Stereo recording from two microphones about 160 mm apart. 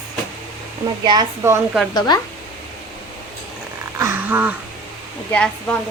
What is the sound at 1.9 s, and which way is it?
Speech, 25° left (ahead or behind).